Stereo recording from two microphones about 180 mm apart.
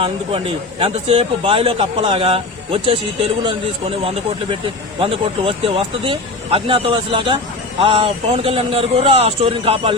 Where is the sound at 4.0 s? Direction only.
35° right (ahead or behind).